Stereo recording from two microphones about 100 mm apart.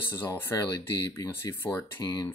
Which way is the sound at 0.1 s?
30° left (ahead or behind).